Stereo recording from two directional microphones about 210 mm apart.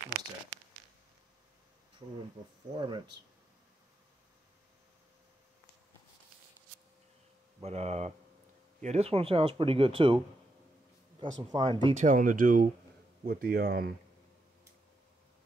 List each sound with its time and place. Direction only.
2.8 s speech: 20° right (ahead or behind)
7.6 s speech: 30° right (ahead or behind)
11.5 s speech: 20° right (ahead or behind)
12.0 s speech: 40° right (ahead or behind)